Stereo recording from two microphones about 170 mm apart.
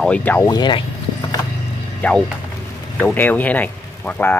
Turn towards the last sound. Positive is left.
turn(degrees=10)  # may be behind; listen again after turning